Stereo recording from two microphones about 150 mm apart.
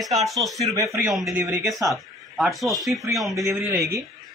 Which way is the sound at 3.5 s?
15° right (ahead or behind).